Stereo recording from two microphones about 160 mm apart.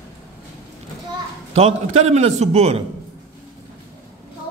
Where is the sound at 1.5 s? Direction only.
40° right (ahead or behind).